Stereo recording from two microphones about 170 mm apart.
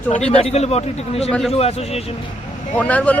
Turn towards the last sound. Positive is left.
turn(degrees=10)  # may be behind; listen again after turning